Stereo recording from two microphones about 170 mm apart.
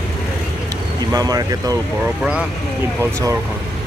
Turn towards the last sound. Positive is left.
turn(degrees=-20)  # may be behind; listen again after turning